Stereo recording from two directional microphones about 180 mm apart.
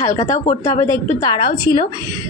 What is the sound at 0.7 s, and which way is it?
Speech, 15° left (ahead or behind).